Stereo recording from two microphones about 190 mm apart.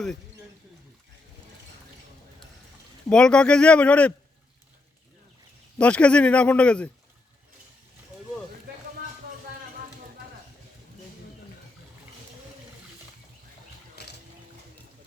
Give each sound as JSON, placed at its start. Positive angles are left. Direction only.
{"t": 3.1, "sound": "speech", "side_deg": 5}
{"t": 5.8, "sound": "speech", "side_deg": 5}
{"t": 14.0, "sound": "water", "side_deg": 60}